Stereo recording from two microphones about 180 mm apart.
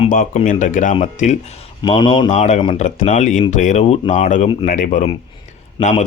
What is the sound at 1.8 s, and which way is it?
Speech, 25° left (ahead or behind).